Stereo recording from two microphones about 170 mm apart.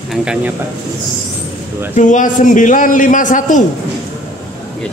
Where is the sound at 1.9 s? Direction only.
45° left (ahead or behind).